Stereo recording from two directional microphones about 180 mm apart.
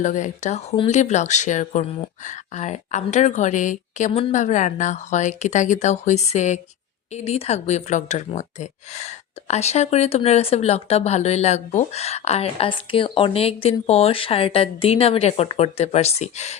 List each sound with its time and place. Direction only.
0.0 s speech: 45° left (ahead or behind)